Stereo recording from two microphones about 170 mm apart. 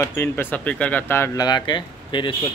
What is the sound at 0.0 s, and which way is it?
Speech, 15° left (ahead or behind).